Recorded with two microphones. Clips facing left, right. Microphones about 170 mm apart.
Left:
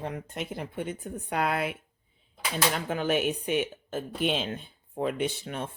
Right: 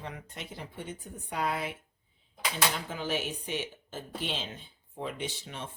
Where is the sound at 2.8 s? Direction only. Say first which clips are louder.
Left 7 dB; 60° left (ahead or behind).